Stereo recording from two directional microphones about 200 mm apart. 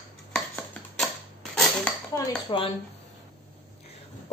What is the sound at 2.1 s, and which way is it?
Speech, 25° left (ahead or behind).